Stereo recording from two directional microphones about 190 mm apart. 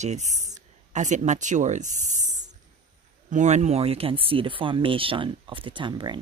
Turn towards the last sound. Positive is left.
turn(degrees=-25)  # may be behind; listen again after turning